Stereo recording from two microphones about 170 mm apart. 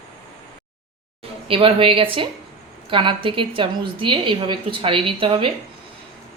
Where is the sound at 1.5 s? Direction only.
35° right (ahead or behind).